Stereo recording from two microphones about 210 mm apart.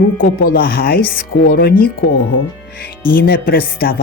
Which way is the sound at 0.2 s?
45° left (ahead or behind).